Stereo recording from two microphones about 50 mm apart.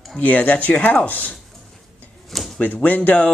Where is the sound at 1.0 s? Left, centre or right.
Left.